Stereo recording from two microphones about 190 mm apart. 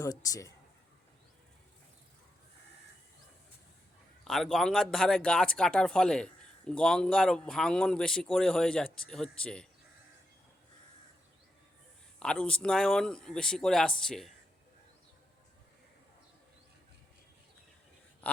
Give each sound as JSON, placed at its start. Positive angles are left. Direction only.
{"t": 0.0, "sound": "speech", "side_deg": 20}
{"t": 4.2, "sound": "speech", "side_deg": 0}
{"t": 12.2, "sound": "speech", "side_deg": 5}